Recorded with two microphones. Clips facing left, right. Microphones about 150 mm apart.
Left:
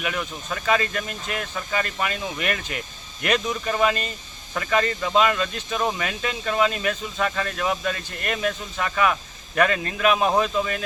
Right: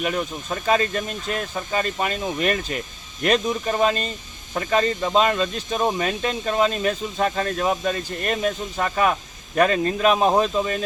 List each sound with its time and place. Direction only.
0.0 s speech: 30° right (ahead or behind)